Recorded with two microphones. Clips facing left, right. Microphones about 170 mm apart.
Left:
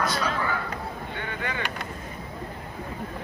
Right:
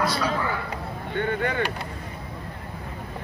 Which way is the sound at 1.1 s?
55° right (ahead or behind).